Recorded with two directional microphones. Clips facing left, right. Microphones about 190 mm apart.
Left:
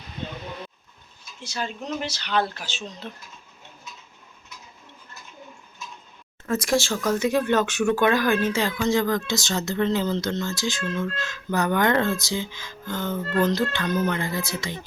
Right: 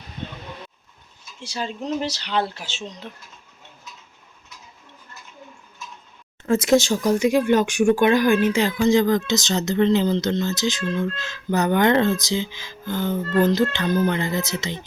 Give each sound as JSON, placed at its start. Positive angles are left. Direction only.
{"t": 1.4, "sound": "speech", "side_deg": -30}
{"t": 6.4, "sound": "speech", "side_deg": -25}